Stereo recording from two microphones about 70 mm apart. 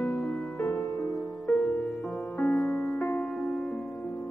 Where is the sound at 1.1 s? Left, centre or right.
Centre.